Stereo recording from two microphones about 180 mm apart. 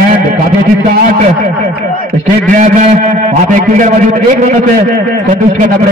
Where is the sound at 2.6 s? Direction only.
45° right (ahead or behind).